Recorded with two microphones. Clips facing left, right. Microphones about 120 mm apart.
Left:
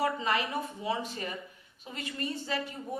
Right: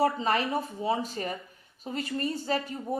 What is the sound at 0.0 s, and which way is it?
Speech, 35° right (ahead or behind).